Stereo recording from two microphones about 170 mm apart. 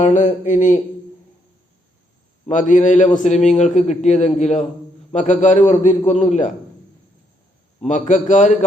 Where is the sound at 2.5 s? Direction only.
45° left (ahead or behind).